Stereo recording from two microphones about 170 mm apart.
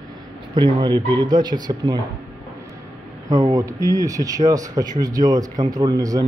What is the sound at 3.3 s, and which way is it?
Speech, 20° right (ahead or behind).